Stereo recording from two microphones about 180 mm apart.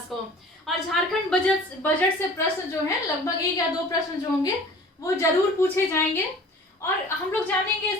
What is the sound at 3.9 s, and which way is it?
Speech, 25° left (ahead or behind).